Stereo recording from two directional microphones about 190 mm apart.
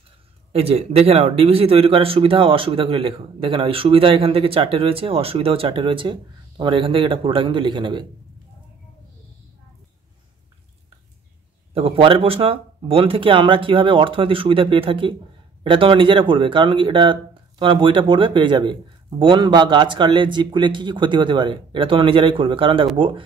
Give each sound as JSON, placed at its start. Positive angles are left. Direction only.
{"t": 0.5, "sound": "speech", "side_deg": -30}
{"t": 11.7, "sound": "speech", "side_deg": -30}